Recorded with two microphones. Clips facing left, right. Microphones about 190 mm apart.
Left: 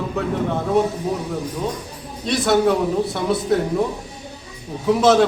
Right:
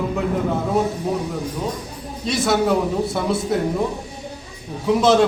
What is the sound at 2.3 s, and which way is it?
A man's voice, centre (ahead or behind).